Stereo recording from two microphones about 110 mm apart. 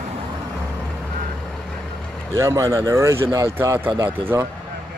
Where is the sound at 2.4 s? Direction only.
30° right (ahead or behind).